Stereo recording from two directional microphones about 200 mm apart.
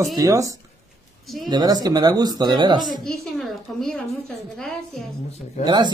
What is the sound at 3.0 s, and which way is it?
Speech, 5° left (ahead or behind).